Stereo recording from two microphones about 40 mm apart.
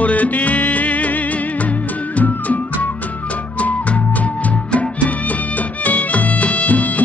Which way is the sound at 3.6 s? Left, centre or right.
Left.